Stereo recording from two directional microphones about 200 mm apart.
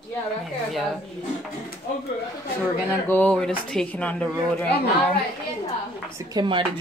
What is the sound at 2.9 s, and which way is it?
A woman's voice, 10° left (ahead or behind).